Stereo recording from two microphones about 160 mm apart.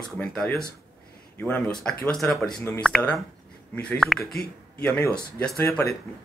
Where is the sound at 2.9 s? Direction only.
5° left (ahead or behind).